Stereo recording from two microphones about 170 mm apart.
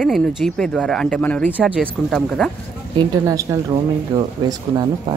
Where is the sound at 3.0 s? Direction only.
20° right (ahead or behind).